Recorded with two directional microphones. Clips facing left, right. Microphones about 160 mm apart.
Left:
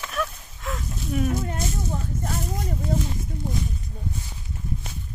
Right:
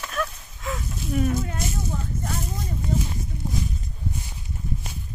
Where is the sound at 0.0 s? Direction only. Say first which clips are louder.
Even; centre (ahead or behind).